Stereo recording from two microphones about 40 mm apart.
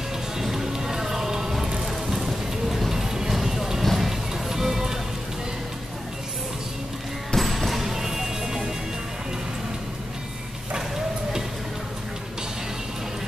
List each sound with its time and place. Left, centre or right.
0.4 s music: centre
7.3 s music: centre